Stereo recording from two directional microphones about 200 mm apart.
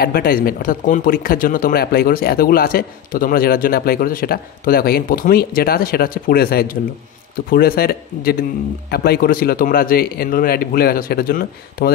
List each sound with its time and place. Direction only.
0.0 s speech: 50° left (ahead or behind)